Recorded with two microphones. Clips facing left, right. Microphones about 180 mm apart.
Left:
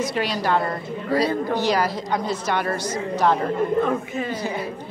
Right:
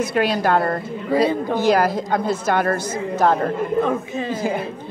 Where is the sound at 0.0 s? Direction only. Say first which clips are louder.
Right 4 dB; 55° right (ahead or behind).